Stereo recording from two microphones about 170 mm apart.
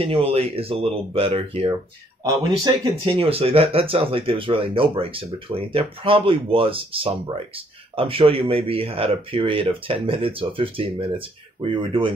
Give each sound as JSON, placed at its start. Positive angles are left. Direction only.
{"t": 0.0, "sound": "speech", "side_deg": -35}